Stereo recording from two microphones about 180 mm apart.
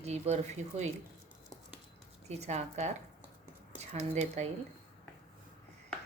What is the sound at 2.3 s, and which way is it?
Speech, 35° right (ahead or behind).